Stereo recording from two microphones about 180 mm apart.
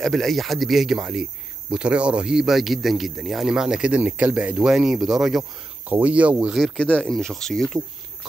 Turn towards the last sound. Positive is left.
turn(degrees=0)  # may be behind; listen again after turning